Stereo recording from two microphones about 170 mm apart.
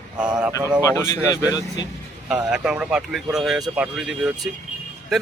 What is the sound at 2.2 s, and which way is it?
Speech, 5° right (ahead or behind).